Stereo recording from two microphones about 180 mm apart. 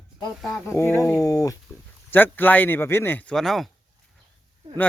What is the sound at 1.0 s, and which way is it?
Speech, 5° left (ahead or behind).